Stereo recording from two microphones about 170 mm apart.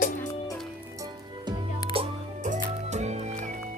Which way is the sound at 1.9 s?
35° right (ahead or behind).